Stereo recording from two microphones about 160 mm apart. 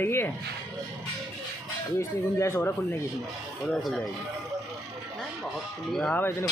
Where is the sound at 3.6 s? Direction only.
Centre (ahead or behind).